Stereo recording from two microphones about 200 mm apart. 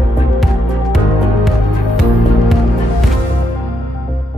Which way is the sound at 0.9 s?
Centre (ahead or behind).